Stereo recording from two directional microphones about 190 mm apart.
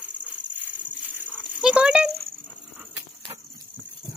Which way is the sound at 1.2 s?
10° right (ahead or behind).